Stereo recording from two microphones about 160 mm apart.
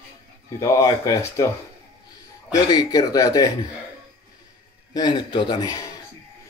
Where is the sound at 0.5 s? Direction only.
20° left (ahead or behind).